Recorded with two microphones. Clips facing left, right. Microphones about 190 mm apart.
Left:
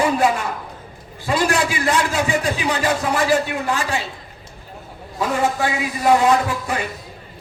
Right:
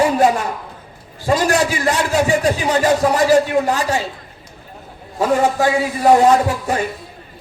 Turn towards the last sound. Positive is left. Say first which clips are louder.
# right 4 dB
turn(degrees=-40)  # may be behind; listen again after turning